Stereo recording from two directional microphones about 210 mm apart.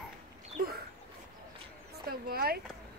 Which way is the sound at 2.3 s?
45° right (ahead or behind).